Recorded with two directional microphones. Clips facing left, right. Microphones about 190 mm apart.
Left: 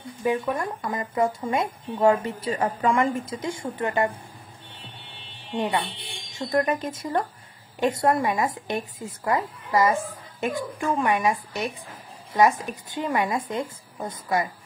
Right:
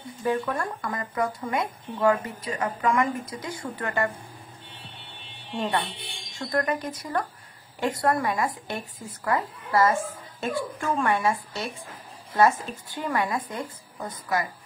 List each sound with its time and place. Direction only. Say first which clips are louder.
0.2 s speech: left 2 dB; 15° left (ahead or behind)
5.6 s a woman's voice: left 2 dB; 15° left (ahead or behind)